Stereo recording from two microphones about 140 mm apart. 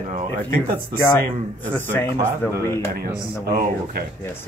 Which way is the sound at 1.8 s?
15° left (ahead or behind).